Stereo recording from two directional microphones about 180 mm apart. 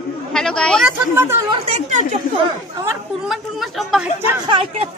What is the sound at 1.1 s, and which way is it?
Speech, 15° right (ahead or behind).